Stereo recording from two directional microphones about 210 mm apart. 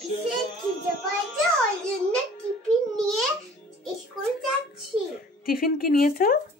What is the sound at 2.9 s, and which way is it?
Babbling, centre (ahead or behind).